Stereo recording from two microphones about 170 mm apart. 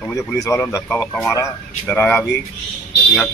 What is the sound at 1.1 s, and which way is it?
Speech, centre (ahead or behind).